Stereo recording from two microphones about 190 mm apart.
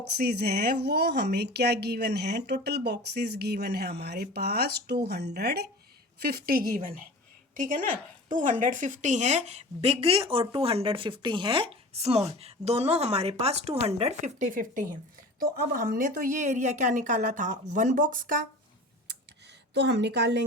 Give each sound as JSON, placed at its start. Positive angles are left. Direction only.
{"t": 0.2, "sound": "a woman's voice", "side_deg": -55}
{"t": 19.7, "sound": "speech", "side_deg": -65}